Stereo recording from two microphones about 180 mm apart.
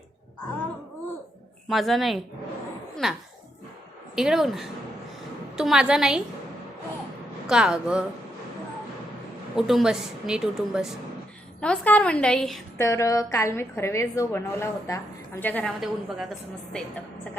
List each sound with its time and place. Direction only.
1.7 s a woman's voice: centre (ahead or behind)
2.9 s a sound: centre (ahead or behind)
4.1 s a woman's voice: centre (ahead or behind)
7.4 s a woman's voice: 5° right (ahead or behind)
9.6 s a woman's voice: centre (ahead or behind)
11.6 s a woman's voice: 5° left (ahead or behind)
12.7 s a woman's voice: 15° left (ahead or behind)
15.8 s a woman's voice: centre (ahead or behind)